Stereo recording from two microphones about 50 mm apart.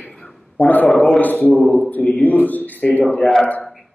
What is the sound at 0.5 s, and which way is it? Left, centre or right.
Speech, left.